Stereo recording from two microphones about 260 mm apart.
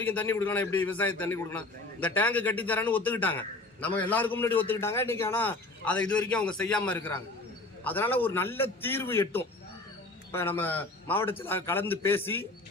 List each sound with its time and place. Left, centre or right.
0.0 s a man's voice: centre